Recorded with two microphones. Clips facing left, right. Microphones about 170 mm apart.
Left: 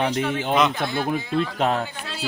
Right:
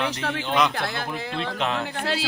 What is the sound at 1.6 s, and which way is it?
Speech, 45° left (ahead or behind).